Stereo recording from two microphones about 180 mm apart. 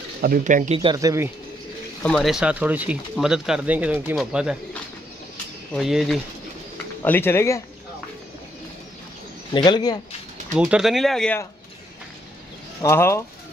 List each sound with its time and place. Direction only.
0.2 s speech: 50° right (ahead or behind)
0.9 s speech: 15° right (ahead or behind)
2.0 s speech: centre (ahead or behind)
5.7 s speech: centre (ahead or behind)
7.0 s speech: 10° left (ahead or behind)
9.5 s speech: 25° left (ahead or behind)
10.5 s speech: 5° right (ahead or behind)
12.8 s speech: 15° left (ahead or behind)